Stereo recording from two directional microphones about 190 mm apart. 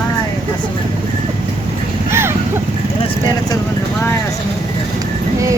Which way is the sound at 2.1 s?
15° right (ahead or behind).